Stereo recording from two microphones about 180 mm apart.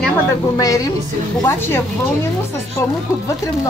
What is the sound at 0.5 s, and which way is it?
Speech, 20° left (ahead or behind).